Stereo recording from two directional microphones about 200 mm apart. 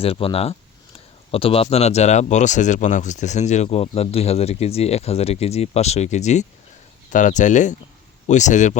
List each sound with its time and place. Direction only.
0.0 s speech: 30° left (ahead or behind)